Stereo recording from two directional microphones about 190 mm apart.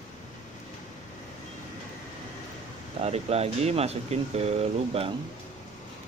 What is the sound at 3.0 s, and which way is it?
Speech, 35° right (ahead or behind).